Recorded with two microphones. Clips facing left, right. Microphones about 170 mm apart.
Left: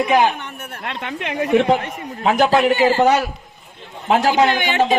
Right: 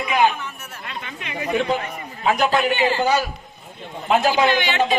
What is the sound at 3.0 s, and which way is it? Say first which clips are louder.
Speech: left 5 dB; 75° left (ahead or behind).